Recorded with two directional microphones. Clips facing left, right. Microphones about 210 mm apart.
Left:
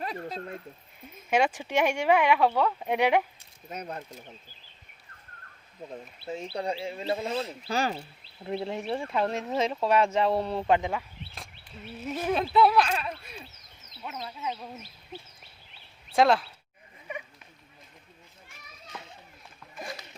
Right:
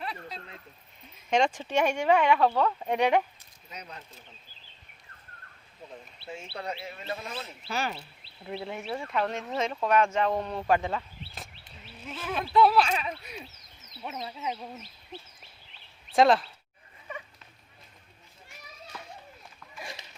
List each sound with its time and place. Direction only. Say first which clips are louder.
0.0 s a sound: left 5 dB; 45° left (ahead or behind)
1.3 s speech: even; 5° left (ahead or behind)
3.7 s speech: left 8 dB; 50° left (ahead or behind)
5.9 s a man's voice: left 5 dB; 35° left (ahead or behind); by 11.0 s 15° left (ahead or behind)
12.1 s speech: left 7 dB; 45° left (ahead or behind)
12.7 s speech: even; centre (ahead or behind)
14.0 s speech: right 1 dB; 20° right (ahead or behind)
16.1 s speech: right 1 dB; centre (ahead or behind)
18.9 s children playing: left 2 dB; 20° left (ahead or behind)